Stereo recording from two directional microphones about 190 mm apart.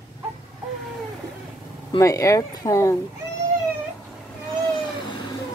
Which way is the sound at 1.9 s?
15° left (ahead or behind).